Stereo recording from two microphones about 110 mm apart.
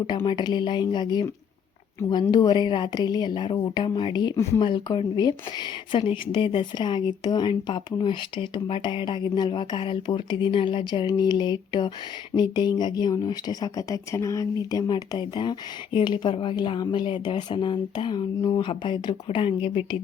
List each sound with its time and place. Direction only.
0.3 s speech: 40° left (ahead or behind)